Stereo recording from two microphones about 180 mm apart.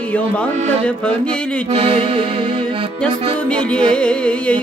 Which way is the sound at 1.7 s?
30° right (ahead or behind).